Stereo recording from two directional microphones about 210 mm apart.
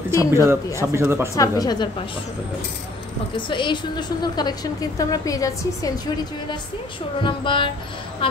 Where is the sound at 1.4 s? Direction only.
20° left (ahead or behind).